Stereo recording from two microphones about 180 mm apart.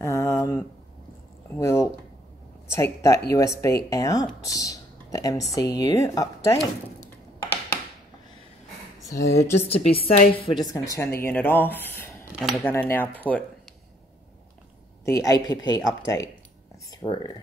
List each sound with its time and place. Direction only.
0.0 s a sound: 15° left (ahead or behind)
2.7 s speech: 15° left (ahead or behind)
9.1 s speech: 20° left (ahead or behind)
9.4 s speech: 35° left (ahead or behind); by 12.1 s 10° left (ahead or behind)
12.3 s speech: centre (ahead or behind)
12.6 s speech: 10° left (ahead or behind)
15.0 s speech: 20° left (ahead or behind)